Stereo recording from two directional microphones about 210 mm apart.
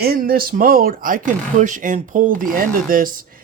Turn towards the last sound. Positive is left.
turn(degrees=-40)  # may be behind; listen again after turning